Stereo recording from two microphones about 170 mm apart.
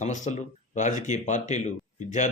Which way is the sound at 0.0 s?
45° left (ahead or behind).